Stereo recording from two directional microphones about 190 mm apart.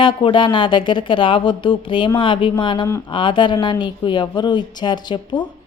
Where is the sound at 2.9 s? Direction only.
15° left (ahead or behind).